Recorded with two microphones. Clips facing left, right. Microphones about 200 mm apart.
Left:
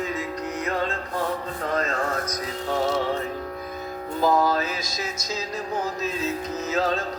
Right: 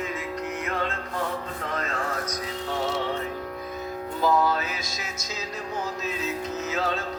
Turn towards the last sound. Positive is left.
turn(degrees=40)  # may be behind; listen again after turning